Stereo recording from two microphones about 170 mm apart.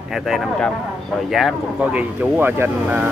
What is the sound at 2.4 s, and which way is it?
Speech, 15° right (ahead or behind).